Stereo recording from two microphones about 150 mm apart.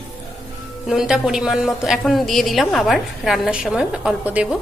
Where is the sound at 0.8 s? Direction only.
Centre (ahead or behind).